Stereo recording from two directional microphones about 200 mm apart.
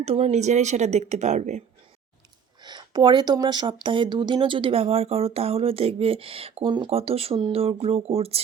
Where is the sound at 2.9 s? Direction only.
20° right (ahead or behind).